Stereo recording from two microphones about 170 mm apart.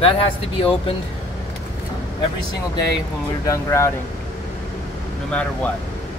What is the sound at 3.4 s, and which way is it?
Speech, 15° left (ahead or behind).